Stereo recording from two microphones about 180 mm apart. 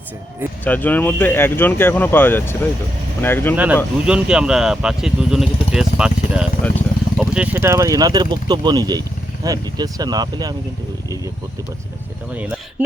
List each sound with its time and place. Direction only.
0.6 s speech: 10° left (ahead or behind)
3.5 s speech: 10° right (ahead or behind)